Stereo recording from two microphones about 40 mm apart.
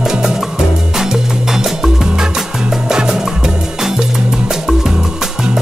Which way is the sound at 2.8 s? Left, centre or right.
Centre.